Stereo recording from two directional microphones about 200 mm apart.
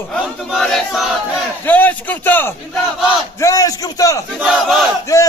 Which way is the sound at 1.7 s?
10° left (ahead or behind).